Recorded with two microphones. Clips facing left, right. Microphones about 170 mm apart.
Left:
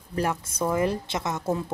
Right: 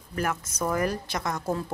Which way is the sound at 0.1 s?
30° left (ahead or behind).